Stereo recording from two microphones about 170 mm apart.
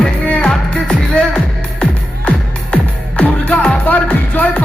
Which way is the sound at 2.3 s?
5° left (ahead or behind).